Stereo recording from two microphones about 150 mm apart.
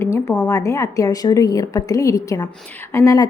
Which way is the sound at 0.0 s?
20° left (ahead or behind).